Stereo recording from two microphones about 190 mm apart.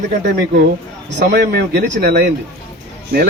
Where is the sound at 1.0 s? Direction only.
60° right (ahead or behind).